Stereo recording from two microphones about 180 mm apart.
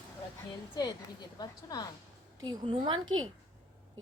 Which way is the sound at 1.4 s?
20° left (ahead or behind).